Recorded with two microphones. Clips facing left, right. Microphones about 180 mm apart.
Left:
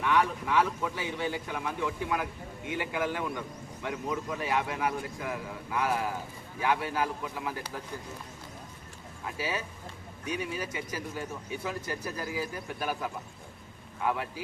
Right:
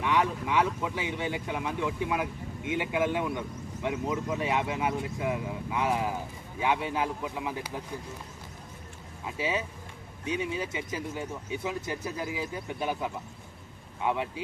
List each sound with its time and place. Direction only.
0.0 s speech: 20° right (ahead or behind)
9.2 s speech: 20° right (ahead or behind)